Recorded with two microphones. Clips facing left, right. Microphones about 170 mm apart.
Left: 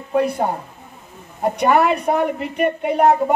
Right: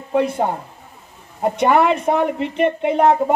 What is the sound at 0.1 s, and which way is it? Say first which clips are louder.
A woman's voice: even; 20° right (ahead or behind).